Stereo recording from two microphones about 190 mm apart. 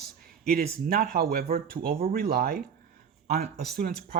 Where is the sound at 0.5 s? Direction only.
50° right (ahead or behind).